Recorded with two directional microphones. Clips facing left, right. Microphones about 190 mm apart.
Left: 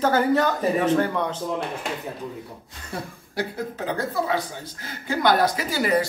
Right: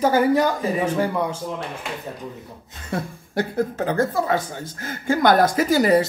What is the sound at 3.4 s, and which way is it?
A woman's voice, 50° right (ahead or behind).